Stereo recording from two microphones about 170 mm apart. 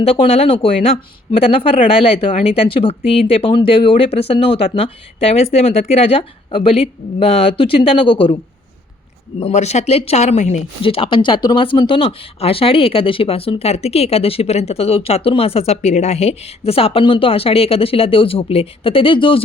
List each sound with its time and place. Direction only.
0.0 s speech: 35° left (ahead or behind)
9.4 s speech: 40° left (ahead or behind)